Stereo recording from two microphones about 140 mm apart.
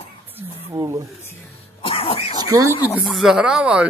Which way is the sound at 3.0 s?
Centre (ahead or behind).